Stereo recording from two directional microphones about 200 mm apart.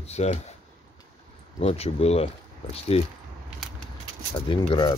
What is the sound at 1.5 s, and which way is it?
Speech, 30° left (ahead or behind).